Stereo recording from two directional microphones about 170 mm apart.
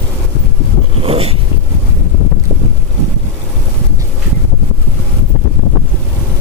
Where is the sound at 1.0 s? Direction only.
35° right (ahead or behind).